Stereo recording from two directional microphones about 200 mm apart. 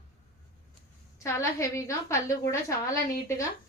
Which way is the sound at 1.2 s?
15° left (ahead or behind).